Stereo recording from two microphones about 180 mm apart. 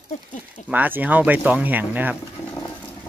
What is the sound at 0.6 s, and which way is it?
Speech, 10° right (ahead or behind).